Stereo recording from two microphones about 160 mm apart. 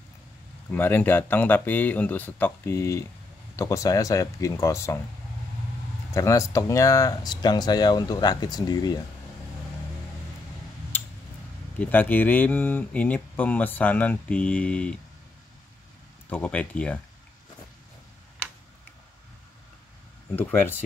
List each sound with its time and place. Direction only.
0.7 s speech: 15° left (ahead or behind)
6.1 s speech: 20° left (ahead or behind)
11.8 s speech: 10° left (ahead or behind)
16.3 s speech: 10° left (ahead or behind)